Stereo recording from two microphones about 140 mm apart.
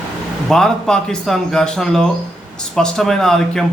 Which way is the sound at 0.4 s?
5° left (ahead or behind).